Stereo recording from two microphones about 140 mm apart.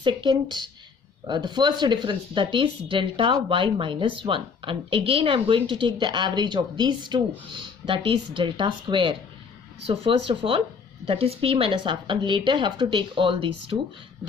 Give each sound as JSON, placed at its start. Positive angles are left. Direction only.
{"t": 0.0, "sound": "speech", "side_deg": -35}